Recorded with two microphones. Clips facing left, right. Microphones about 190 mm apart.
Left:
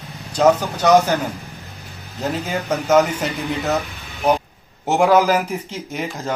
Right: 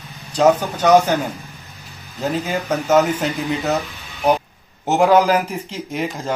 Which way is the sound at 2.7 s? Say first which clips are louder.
Even; 5° right (ahead or behind).